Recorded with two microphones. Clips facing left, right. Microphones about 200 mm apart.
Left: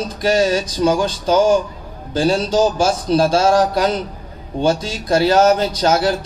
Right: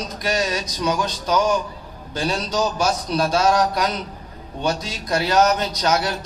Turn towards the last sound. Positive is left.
turn(degrees=30)  # may be behind; listen again after turning